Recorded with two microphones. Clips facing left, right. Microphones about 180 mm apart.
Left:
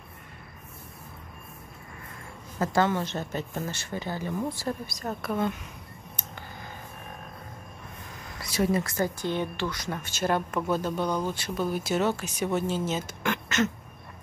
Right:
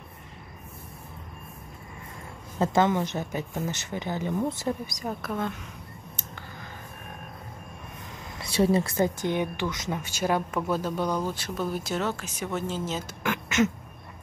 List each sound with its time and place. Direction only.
2.6 s speech: 20° right (ahead or behind)
5.2 s speech: 5° left (ahead or behind)
8.4 s speech: 30° right (ahead or behind); by 13.7 s 10° right (ahead or behind)